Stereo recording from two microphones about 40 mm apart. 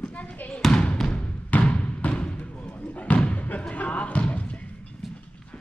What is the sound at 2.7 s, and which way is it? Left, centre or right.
Slam, left.